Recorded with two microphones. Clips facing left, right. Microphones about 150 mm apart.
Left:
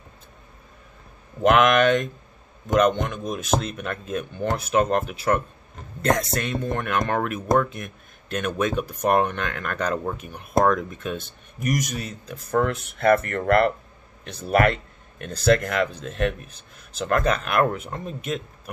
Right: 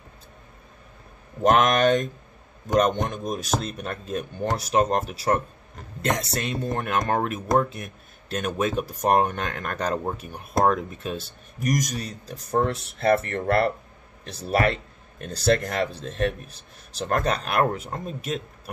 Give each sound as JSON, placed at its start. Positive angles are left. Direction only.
{"t": 1.4, "sound": "a man's voice", "side_deg": -40}
{"t": 10.6, "sound": "speech", "side_deg": -30}